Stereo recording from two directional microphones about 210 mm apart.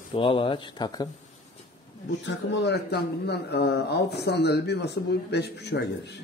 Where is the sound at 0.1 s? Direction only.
25° left (ahead or behind).